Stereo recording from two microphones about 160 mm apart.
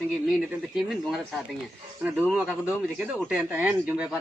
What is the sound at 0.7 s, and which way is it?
Speech, centre (ahead or behind).